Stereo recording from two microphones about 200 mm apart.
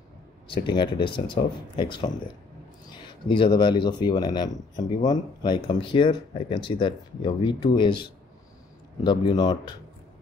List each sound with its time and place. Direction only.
0.5 s speech: 25° left (ahead or behind)